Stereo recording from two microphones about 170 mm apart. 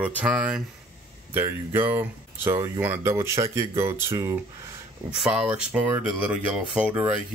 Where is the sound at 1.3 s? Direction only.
15° right (ahead or behind).